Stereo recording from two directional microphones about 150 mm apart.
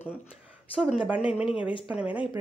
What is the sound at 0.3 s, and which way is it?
Speech, centre (ahead or behind).